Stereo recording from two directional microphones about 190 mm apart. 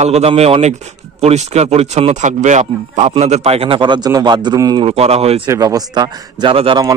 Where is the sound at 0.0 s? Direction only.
35° right (ahead or behind).